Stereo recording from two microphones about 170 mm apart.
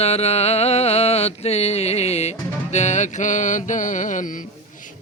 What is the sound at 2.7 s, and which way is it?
Mantra, 45° left (ahead or behind).